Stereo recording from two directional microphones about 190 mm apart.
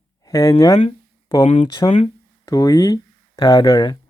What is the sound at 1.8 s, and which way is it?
Speech, 20° left (ahead or behind).